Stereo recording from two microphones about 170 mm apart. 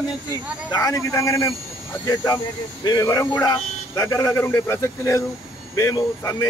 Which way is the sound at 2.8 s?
20° left (ahead or behind).